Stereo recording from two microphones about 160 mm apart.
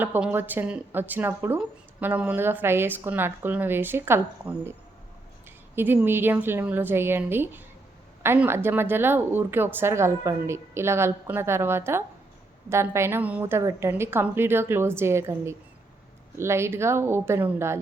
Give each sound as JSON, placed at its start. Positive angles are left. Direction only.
{"t": 0.0, "sound": "speech", "side_deg": -10}
{"t": 5.7, "sound": "speech", "side_deg": -15}